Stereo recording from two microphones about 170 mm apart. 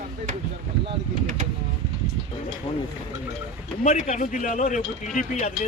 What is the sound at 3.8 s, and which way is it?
Speech, 45° left (ahead or behind).